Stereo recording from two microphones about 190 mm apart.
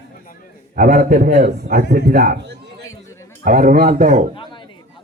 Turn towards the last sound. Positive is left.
turn(degrees=-45)  # may be behind; listen again after turning